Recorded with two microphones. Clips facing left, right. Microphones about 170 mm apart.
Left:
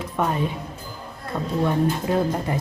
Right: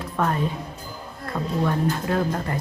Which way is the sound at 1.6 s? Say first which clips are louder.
Left 3 dB; 15° left (ahead or behind).